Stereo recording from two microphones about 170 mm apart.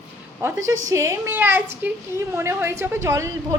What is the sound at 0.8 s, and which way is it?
A woman's voice, 15° right (ahead or behind).